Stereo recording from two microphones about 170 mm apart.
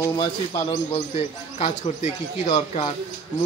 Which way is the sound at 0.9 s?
35° left (ahead or behind).